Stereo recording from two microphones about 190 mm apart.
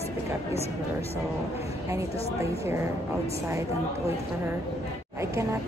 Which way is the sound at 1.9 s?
15° right (ahead or behind).